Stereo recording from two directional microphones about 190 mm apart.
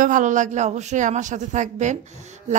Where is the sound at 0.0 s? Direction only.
40° right (ahead or behind).